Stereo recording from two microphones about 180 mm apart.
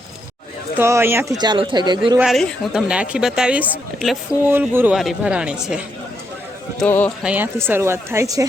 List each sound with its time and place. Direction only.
0.8 s speech: 15° right (ahead or behind)
1.4 s speech: 25° right (ahead or behind)
2.1 s a woman's voice: centre (ahead or behind)
6.7 s speech: 10° left (ahead or behind)
7.2 s speech: 10° right (ahead or behind)